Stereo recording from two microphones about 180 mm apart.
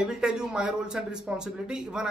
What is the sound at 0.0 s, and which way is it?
Speech, 5° right (ahead or behind).